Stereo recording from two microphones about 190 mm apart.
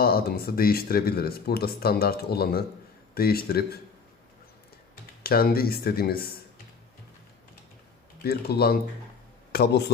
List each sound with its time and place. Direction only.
0.0 s speech: 55° left (ahead or behind)
5.2 s speech: 55° left (ahead or behind)
8.2 s speech: 55° left (ahead or behind)